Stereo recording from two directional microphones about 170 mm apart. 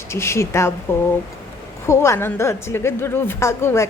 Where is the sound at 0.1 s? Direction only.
15° left (ahead or behind).